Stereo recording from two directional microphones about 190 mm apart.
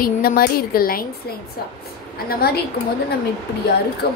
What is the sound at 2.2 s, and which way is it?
Speech, 55° left (ahead or behind).